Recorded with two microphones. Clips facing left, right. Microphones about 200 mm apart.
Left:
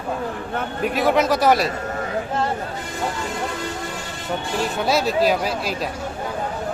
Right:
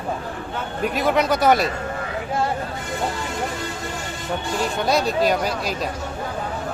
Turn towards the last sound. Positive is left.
turn(degrees=0)  # may be behind; listen again after turning